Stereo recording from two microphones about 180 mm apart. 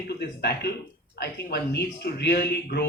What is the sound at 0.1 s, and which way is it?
A man's voice, 70° left (ahead or behind).